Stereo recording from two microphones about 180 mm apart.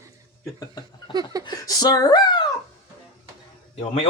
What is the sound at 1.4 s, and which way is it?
Speech, 20° left (ahead or behind).